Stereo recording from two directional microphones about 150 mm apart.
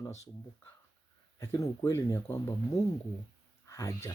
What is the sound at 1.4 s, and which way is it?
Speech, 15° left (ahead or behind).